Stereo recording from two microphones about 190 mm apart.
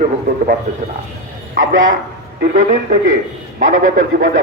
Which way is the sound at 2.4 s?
40° right (ahead or behind).